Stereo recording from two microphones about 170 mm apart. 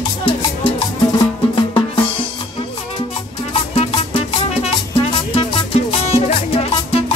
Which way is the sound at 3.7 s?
35° left (ahead or behind).